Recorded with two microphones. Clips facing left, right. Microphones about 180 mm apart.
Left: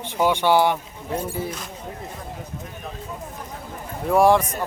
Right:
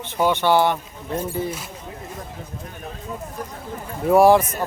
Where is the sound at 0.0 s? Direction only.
10° left (ahead or behind).